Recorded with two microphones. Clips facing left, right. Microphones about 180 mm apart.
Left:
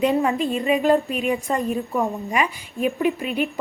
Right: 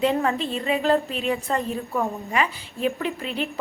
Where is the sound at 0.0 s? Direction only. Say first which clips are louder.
Left 3 dB; 15° left (ahead or behind).